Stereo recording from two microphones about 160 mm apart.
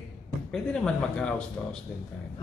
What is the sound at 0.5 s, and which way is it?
Speech, 5° left (ahead or behind).